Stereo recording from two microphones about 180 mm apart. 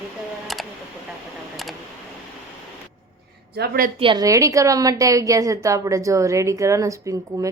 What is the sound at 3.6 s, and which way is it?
Speech, 50° right (ahead or behind).